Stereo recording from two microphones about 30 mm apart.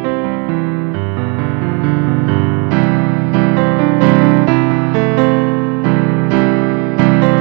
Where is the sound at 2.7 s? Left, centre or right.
Centre.